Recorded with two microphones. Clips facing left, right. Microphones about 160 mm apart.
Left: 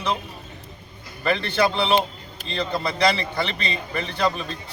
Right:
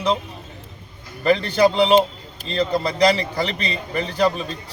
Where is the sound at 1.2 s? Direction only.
35° right (ahead or behind).